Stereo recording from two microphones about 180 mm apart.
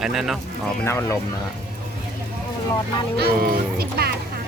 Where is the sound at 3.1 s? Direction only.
60° right (ahead or behind).